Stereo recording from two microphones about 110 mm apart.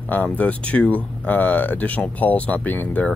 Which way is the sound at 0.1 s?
15° left (ahead or behind).